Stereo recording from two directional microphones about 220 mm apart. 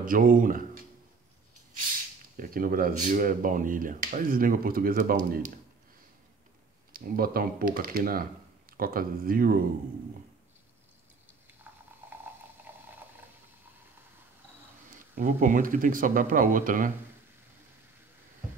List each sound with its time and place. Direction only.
0.0 s speech: 40° right (ahead or behind)
2.3 s speech: 40° right (ahead or behind)
6.9 s speech: 40° right (ahead or behind)
11.7 s snoring: 10° right (ahead or behind)
12.0 s a sound: 10° right (ahead or behind)
12.7 s boiling: 10° right (ahead or behind)
15.1 s speech: 35° right (ahead or behind)